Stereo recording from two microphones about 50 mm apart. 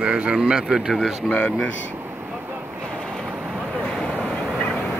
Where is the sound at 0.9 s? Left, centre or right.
Centre.